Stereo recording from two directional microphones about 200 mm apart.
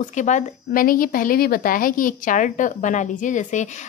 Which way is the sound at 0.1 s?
35° left (ahead or behind).